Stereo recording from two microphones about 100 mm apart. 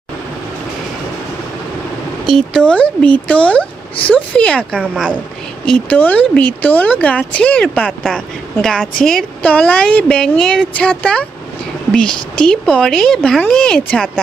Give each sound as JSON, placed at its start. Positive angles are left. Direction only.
{"t": 2.2, "sound": "speech", "side_deg": 0}
{"t": 2.6, "sound": "speech", "side_deg": 10}
{"t": 9.4, "sound": "speech", "side_deg": 15}